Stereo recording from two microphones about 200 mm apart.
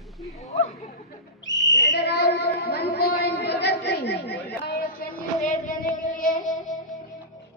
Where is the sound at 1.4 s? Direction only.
65° left (ahead or behind); by 6.7 s 40° left (ahead or behind).